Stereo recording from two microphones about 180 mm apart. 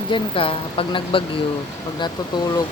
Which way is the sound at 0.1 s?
30° left (ahead or behind).